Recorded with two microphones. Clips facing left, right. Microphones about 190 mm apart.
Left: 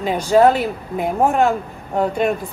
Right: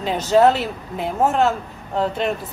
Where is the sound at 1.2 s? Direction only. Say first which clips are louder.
Left 1 dB; 15° left (ahead or behind).